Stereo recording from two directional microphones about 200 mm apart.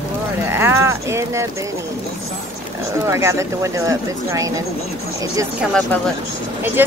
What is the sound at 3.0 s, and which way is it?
Speech, 15° right (ahead or behind).